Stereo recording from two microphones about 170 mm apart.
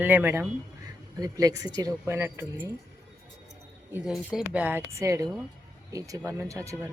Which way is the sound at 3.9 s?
5° right (ahead or behind).